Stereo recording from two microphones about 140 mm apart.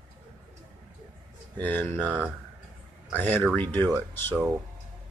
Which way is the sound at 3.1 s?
10° left (ahead or behind).